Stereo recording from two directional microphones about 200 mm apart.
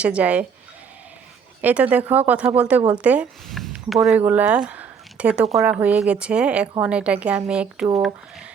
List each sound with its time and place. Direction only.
0.0 s speech: 5° right (ahead or behind)
1.6 s speech: 5° right (ahead or behind)
5.7 s speech: 5° right (ahead or behind)